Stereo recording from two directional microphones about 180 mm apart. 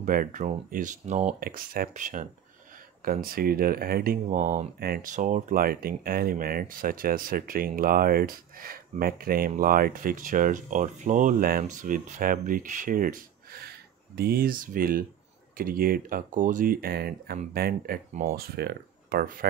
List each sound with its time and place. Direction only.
0.0 s speech: 50° right (ahead or behind)
1.4 s speech: 55° right (ahead or behind)
3.3 s speech: 55° right (ahead or behind)